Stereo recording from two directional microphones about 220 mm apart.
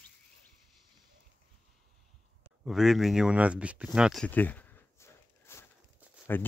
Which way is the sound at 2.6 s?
Centre (ahead or behind).